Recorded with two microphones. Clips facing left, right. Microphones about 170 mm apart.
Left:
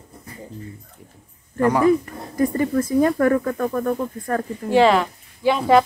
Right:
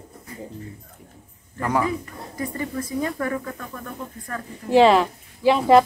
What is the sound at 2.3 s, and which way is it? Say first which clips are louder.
Speech: left 9 dB; 45° left (ahead or behind).